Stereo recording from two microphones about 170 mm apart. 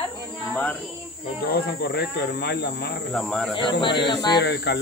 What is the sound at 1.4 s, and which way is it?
Speech, 65° left (ahead or behind).